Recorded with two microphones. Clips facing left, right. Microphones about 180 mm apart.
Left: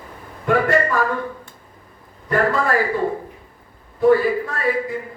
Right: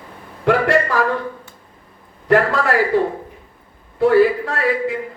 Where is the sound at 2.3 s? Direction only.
75° right (ahead or behind).